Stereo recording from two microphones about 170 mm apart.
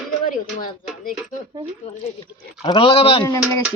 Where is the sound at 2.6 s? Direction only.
30° left (ahead or behind).